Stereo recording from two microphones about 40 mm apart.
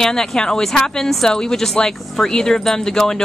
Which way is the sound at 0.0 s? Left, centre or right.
Centre.